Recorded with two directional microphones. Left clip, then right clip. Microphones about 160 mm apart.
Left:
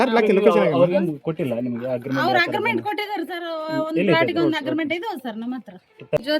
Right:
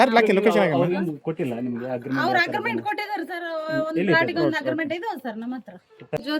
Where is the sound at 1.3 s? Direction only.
45° left (ahead or behind).